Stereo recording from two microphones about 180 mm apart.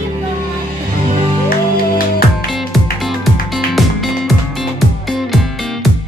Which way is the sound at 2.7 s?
Centre (ahead or behind).